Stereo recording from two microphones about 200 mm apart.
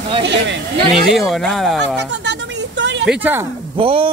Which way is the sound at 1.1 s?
Centre (ahead or behind).